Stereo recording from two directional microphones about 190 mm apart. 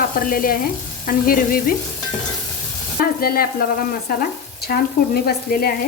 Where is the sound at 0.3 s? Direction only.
50° left (ahead or behind).